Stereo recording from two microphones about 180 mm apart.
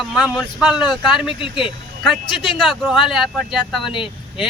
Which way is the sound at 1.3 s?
30° left (ahead or behind).